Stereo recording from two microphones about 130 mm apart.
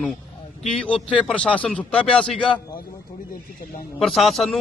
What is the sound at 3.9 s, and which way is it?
Speech, centre (ahead or behind).